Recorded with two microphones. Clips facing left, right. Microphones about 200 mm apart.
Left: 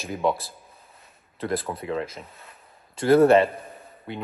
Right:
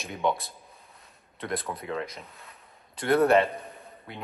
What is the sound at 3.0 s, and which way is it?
Speech, 30° left (ahead or behind).